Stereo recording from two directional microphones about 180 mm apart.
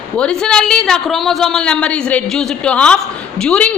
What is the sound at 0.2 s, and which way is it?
A woman's voice, 5° left (ahead or behind).